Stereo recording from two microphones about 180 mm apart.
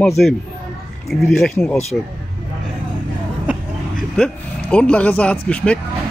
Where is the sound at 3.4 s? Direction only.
5° right (ahead or behind).